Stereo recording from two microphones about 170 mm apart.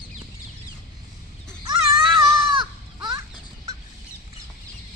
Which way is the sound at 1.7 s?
25° right (ahead or behind).